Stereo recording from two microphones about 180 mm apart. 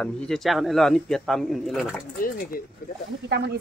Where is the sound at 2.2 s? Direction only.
50° left (ahead or behind).